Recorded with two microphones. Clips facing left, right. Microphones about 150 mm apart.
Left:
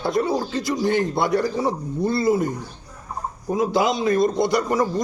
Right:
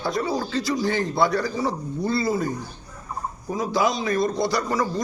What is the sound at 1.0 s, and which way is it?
Speech, 55° left (ahead or behind).